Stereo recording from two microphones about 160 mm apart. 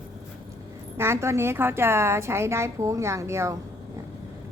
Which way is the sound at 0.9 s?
15° right (ahead or behind).